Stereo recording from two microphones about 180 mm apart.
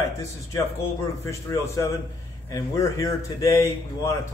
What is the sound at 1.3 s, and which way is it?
Speech, 15° left (ahead or behind).